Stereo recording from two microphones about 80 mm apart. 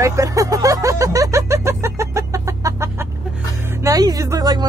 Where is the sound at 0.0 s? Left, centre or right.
Right.